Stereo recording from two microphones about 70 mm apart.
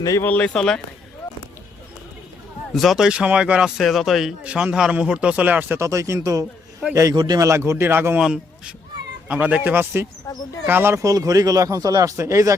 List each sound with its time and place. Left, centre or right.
0.2 s speech: left
0.4 s speech: centre
2.7 s a man's voice: centre
3.8 s speech: centre
4.4 s a man's voice: centre
5.8 s speech: right
7.1 s speech: right
7.3 s speech: right
8.2 s a man's voice: centre
9.7 s speech: right
10.9 s speech: right
12.1 s speech: right